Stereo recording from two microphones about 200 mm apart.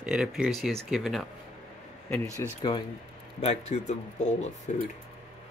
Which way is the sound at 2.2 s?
15° right (ahead or behind).